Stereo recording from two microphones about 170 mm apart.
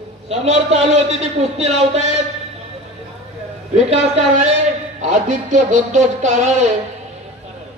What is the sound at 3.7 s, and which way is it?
Speech, 45° right (ahead or behind).